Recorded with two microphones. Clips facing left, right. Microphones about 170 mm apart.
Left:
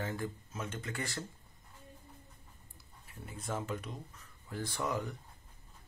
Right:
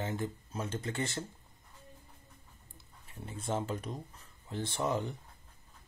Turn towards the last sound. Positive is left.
turn(degrees=-25)  # may be behind; listen again after turning